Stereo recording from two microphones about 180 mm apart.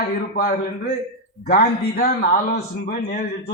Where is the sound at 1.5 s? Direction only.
55° left (ahead or behind).